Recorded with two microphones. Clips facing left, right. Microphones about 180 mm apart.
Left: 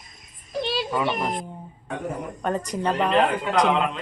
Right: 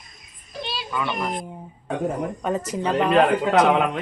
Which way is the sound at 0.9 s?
25° left (ahead or behind).